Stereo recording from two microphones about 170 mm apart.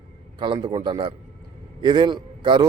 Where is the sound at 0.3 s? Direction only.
30° right (ahead or behind).